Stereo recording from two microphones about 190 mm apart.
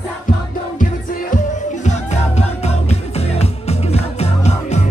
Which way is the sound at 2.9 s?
35° left (ahead or behind).